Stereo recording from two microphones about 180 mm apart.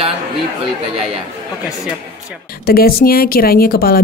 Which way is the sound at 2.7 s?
55° left (ahead or behind).